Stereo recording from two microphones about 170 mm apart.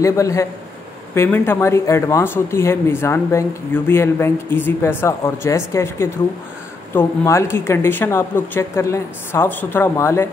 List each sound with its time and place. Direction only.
0.0 s speech: 20° left (ahead or behind)